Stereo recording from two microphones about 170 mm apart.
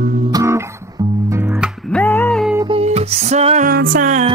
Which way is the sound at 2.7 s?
40° right (ahead or behind).